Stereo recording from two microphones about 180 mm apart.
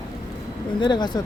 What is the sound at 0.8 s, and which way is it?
Speech, 25° left (ahead or behind).